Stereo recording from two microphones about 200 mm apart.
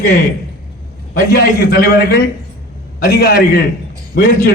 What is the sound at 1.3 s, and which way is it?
Speech, 50° left (ahead or behind).